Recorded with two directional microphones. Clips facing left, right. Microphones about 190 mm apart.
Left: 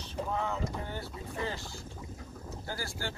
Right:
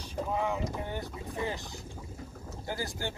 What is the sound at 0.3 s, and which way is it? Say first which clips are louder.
Speech: right 3 dB; 15° right (ahead or behind).